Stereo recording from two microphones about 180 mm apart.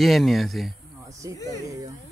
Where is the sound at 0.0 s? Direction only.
Centre (ahead or behind).